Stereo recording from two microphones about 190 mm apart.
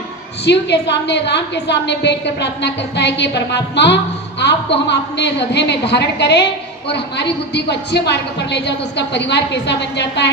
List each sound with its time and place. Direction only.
0.4 s a woman's voice: 65° left (ahead or behind)